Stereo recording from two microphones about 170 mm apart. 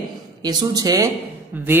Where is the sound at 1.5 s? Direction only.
10° right (ahead or behind).